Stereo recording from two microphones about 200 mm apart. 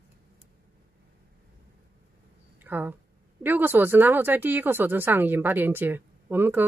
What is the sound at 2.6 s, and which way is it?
Speech, 10° right (ahead or behind).